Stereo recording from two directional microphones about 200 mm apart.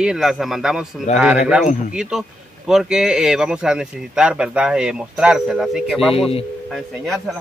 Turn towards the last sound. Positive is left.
turn(degrees=0)  # may be behind; listen again after turning